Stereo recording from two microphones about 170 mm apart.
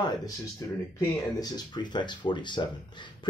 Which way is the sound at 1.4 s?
25° left (ahead or behind).